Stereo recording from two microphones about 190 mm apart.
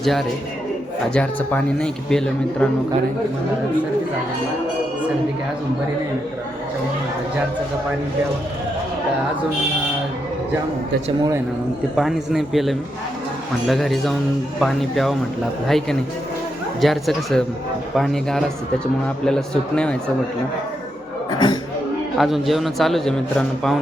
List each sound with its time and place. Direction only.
0.0 s a man's voice: centre (ahead or behind)
11.9 s a man's voice: centre (ahead or behind)
21.2 s a sound: 20° left (ahead or behind)
22.2 s a man's voice: centre (ahead or behind)